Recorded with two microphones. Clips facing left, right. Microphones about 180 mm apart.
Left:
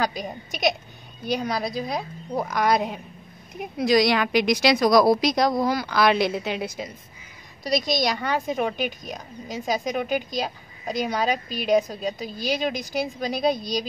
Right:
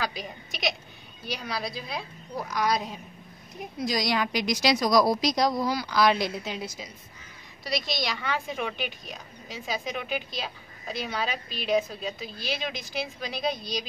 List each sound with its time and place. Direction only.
0.0 s a woman's voice: 45° left (ahead or behind); by 6.9 s 60° left (ahead or behind)
7.6 s a woman's voice: 45° left (ahead or behind)